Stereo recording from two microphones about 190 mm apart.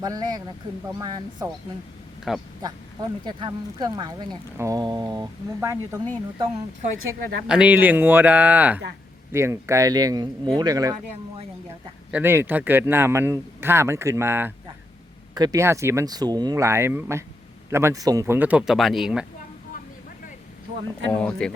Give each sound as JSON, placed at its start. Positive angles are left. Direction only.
{"t": 0.0, "sound": "speech", "side_deg": -20}
{"t": 2.6, "sound": "speech", "side_deg": -20}
{"t": 7.4, "sound": "speech", "side_deg": -5}
{"t": 12.1, "sound": "speech", "side_deg": -10}
{"t": 21.1, "sound": "speech", "side_deg": 5}